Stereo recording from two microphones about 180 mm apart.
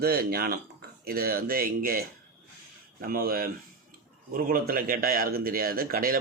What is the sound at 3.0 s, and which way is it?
Speech, 55° right (ahead or behind).